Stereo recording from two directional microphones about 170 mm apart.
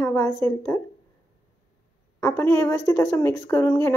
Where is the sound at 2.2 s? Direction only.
15° left (ahead or behind).